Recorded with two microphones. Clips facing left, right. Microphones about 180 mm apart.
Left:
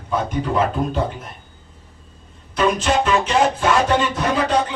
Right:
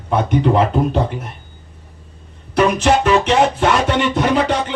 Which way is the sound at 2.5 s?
70° right (ahead or behind).